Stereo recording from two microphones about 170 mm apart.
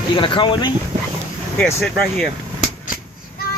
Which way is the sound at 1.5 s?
5° left (ahead or behind).